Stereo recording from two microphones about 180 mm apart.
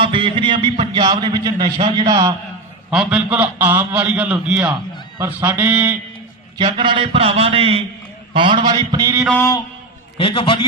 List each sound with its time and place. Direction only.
0.0 s a man's voice: 30° right (ahead or behind)
2.9 s a man's voice: 5° right (ahead or behind)
6.6 s a man's voice: 25° right (ahead or behind)
10.2 s a man's voice: 30° left (ahead or behind)